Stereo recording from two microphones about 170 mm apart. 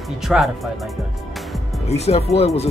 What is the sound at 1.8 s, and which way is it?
Speech, 40° left (ahead or behind).